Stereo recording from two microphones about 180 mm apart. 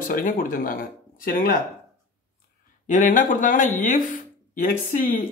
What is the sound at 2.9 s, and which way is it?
Speech, 45° left (ahead or behind).